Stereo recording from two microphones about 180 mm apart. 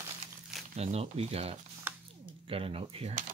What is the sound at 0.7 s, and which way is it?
Speech, 35° right (ahead or behind).